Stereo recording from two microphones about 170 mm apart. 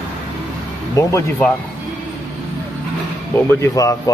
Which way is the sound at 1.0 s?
15° left (ahead or behind).